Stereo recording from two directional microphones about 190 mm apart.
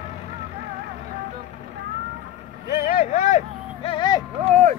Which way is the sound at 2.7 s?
45° left (ahead or behind).